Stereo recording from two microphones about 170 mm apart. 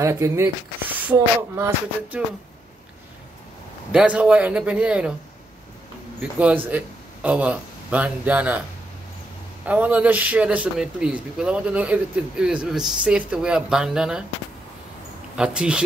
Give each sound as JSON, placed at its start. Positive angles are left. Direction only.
{"t": 0.0, "sound": "speech", "side_deg": -15}
{"t": 3.9, "sound": "speech", "side_deg": -5}
{"t": 6.3, "sound": "speech", "side_deg": -10}
{"t": 9.7, "sound": "a man's voice", "side_deg": -10}
{"t": 15.3, "sound": "a man's voice", "side_deg": -5}